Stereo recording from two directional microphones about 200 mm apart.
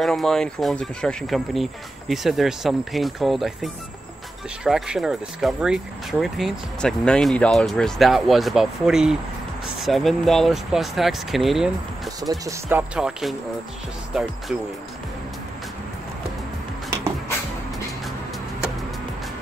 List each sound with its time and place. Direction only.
0.0 s speech: centre (ahead or behind)
12.2 s speech: 15° right (ahead or behind)